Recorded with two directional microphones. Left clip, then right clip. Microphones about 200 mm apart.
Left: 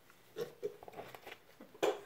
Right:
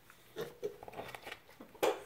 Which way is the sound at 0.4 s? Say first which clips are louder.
Even; centre (ahead or behind).